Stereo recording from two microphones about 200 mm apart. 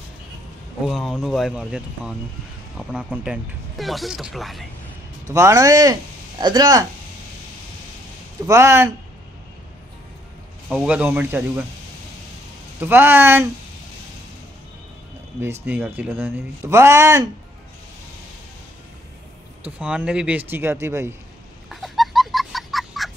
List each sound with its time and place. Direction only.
0.8 s speech: centre (ahead or behind)
5.2 s speech: 15° right (ahead or behind)
8.5 s speech: 15° right (ahead or behind)
10.7 s speech: 5° right (ahead or behind)
12.8 s speech: 10° right (ahead or behind)
15.6 s speech: 10° right (ahead or behind)
19.8 s speech: 5° right (ahead or behind)
21.6 s fowl: centre (ahead or behind)